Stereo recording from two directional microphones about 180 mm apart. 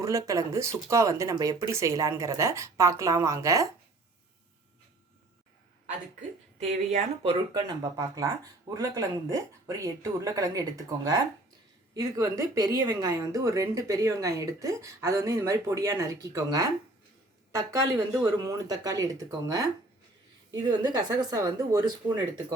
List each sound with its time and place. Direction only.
0.0 s speech: 20° right (ahead or behind)
6.9 s speech: 30° right (ahead or behind)